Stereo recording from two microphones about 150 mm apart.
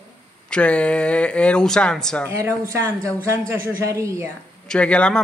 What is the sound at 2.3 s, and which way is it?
A woman's voice, 20° right (ahead or behind).